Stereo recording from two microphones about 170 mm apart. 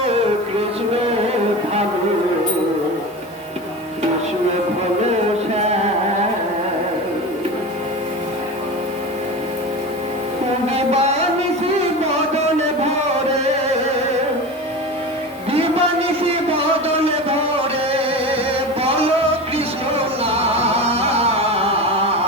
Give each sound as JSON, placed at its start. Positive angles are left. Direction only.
{"t": 10.7, "sound": "music", "side_deg": -35}
{"t": 15.5, "sound": "a sound", "side_deg": -35}
{"t": 18.8, "sound": "music", "side_deg": -35}
{"t": 20.2, "sound": "music", "side_deg": -35}